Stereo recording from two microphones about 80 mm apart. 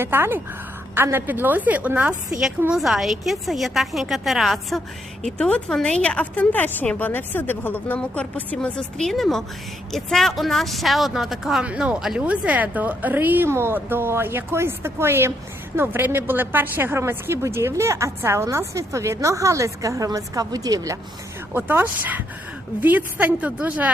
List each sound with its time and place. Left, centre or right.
0.0 s speech: right
2.7 s a woman's voice: centre
5.2 s a woman's voice: centre
9.0 s a woman's voice: centre
11.6 s speech: centre
11.9 s a woman's voice: centre
12.2 s a woman's voice: centre; by 21.0 s right
21.5 s speech: right